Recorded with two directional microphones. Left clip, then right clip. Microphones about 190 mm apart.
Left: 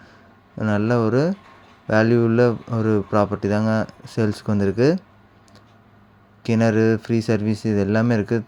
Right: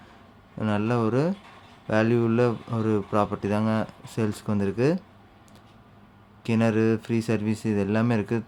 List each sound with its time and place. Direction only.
0.6 s speech: 20° left (ahead or behind)
6.4 s speech: 20° left (ahead or behind)